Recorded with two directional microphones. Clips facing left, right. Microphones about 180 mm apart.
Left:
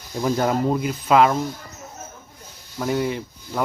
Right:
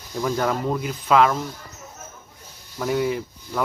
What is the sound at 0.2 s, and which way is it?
Speech, 25° left (ahead or behind).